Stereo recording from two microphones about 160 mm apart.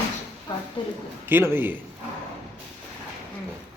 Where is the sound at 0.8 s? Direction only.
30° left (ahead or behind).